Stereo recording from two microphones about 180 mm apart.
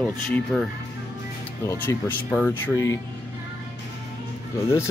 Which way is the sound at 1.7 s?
15° left (ahead or behind).